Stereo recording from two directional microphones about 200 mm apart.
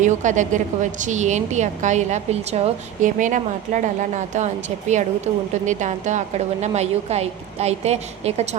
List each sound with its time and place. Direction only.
0.0 s a woman's voice: 40° right (ahead or behind)